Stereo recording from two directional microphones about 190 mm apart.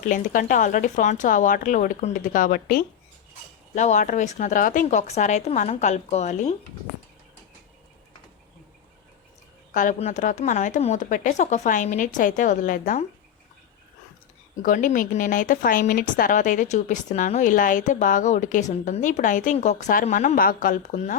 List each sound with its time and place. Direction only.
0.1 s a woman's voice: 45° left (ahead or behind)
9.7 s speech: 40° left (ahead or behind)
14.6 s a woman's voice: 45° left (ahead or behind)